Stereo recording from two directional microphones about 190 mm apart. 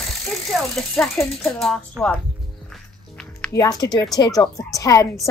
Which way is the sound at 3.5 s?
20° left (ahead or behind).